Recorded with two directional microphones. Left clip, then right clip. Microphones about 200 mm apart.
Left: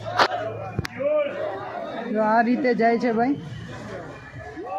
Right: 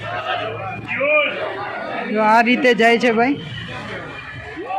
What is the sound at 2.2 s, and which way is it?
Speech, 15° right (ahead or behind).